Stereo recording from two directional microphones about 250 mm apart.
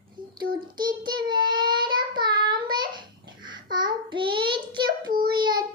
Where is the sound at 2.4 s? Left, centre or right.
Centre.